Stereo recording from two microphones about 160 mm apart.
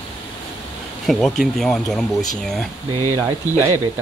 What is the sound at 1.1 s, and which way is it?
Speech, centre (ahead or behind).